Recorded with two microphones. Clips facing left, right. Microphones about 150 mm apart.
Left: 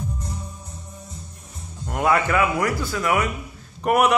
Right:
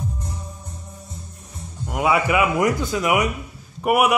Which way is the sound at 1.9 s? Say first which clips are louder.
Right 1 dB; 5° right (ahead or behind).